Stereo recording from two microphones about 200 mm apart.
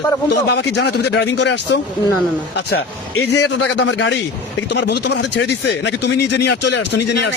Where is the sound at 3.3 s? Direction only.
60° left (ahead or behind).